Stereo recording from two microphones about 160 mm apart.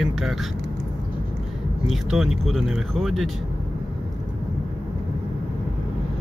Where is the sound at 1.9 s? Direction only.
Centre (ahead or behind).